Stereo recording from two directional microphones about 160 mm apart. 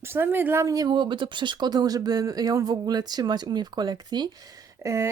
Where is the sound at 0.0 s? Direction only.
15° right (ahead or behind).